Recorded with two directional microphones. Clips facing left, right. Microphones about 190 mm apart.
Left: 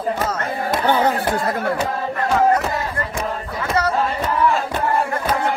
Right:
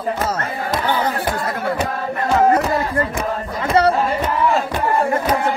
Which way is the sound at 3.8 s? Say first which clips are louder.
Right 6 dB; 30° right (ahead or behind).